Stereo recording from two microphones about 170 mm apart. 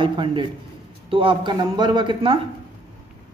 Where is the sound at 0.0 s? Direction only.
30° right (ahead or behind).